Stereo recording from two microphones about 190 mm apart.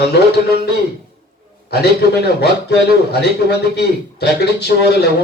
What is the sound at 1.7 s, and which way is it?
A man's voice, 60° left (ahead or behind).